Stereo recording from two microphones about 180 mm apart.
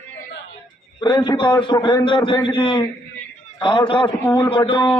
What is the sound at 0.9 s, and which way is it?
A man's voice, 25° left (ahead or behind).